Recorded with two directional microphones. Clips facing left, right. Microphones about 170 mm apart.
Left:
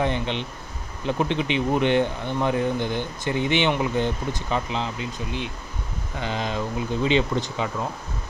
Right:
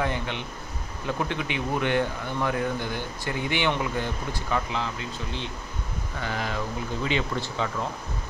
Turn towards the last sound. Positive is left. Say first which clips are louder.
# left 4 dB
turn(degrees=20)  # may be behind; listen again after turning